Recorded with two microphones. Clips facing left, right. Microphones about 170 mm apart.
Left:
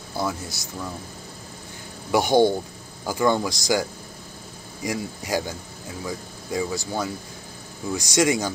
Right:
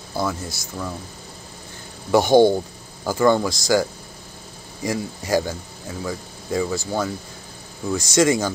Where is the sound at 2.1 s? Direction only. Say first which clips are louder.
Right 4 dB; 15° left (ahead or behind).